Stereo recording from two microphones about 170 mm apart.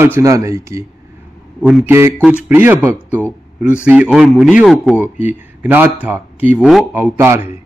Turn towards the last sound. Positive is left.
turn(degrees=-15)  # may be behind; listen again after turning